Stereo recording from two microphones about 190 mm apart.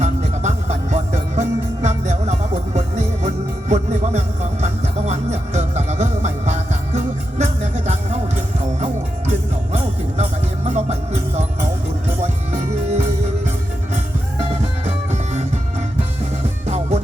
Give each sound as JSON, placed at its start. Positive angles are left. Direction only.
{"t": 0.0, "sound": "music", "side_deg": -35}
{"t": 9.7, "sound": "music", "side_deg": -35}
{"t": 14.8, "sound": "music", "side_deg": -35}
{"t": 16.6, "sound": "music", "side_deg": -35}